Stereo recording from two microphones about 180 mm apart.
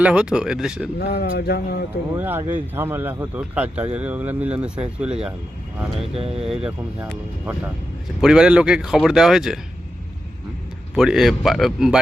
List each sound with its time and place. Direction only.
0.0 s speech: 5° right (ahead or behind)
0.9 s speech: 65° left (ahead or behind)
2.1 s a man's voice: 10° right (ahead or behind)
6.1 s speech: 30° right (ahead or behind)
6.4 s speech: 5° right (ahead or behind)
8.2 s speech: 5° right (ahead or behind)
10.9 s speech: 5° right (ahead or behind)